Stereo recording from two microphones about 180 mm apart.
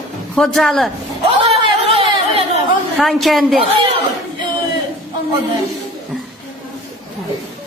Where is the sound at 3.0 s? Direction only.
Centre (ahead or behind).